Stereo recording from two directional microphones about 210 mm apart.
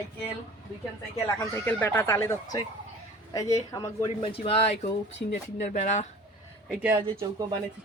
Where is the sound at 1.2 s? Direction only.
15° left (ahead or behind).